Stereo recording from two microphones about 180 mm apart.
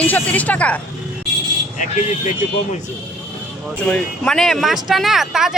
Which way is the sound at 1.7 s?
45° left (ahead or behind).